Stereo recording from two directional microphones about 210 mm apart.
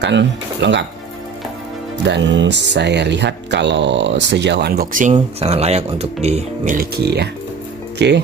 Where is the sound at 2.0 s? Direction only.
60° right (ahead or behind).